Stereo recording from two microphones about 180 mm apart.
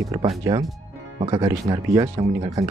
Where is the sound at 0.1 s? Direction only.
20° right (ahead or behind).